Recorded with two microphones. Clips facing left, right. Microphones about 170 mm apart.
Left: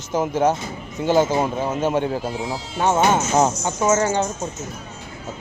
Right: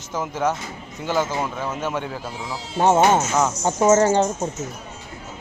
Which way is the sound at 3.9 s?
30° right (ahead or behind).